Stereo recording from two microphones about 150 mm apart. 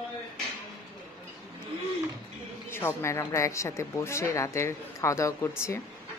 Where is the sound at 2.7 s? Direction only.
15° left (ahead or behind).